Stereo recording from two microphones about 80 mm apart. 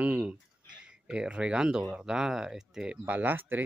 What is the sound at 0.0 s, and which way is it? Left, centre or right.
Speech, centre.